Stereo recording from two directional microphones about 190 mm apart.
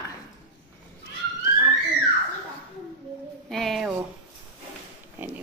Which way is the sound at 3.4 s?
Centre (ahead or behind).